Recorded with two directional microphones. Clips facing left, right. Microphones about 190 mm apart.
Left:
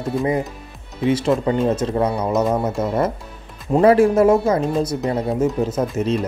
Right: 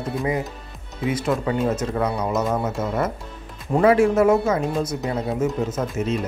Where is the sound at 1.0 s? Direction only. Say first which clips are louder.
Left 5 dB; 30° left (ahead or behind).